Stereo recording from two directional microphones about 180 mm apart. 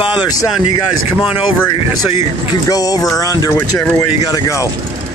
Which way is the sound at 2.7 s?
20° left (ahead or behind).